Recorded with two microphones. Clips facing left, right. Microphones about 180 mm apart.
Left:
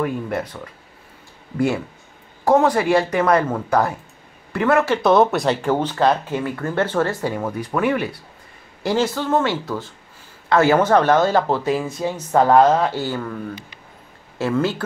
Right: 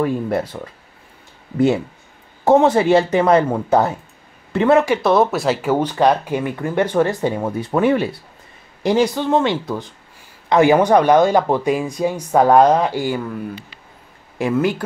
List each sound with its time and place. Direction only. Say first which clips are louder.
0.0 s speech: right 4 dB; 30° right (ahead or behind)
2.4 s a woman's voice: right 3 dB; 25° right (ahead or behind)
4.9 s speech: even; centre (ahead or behind); by 8.1 s 30° right (ahead or behind)
8.8 s speech: right 4 dB; 15° right (ahead or behind)
14.4 s speech: right 2 dB; 15° right (ahead or behind)